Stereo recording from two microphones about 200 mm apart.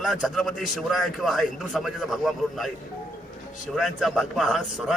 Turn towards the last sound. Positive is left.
turn(degrees=0)  # may be behind; listen again after turning